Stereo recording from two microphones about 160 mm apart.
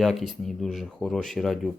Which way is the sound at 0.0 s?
Centre (ahead or behind).